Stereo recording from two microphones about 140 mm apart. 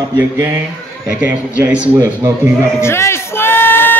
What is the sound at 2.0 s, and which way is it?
Speech, 20° right (ahead or behind).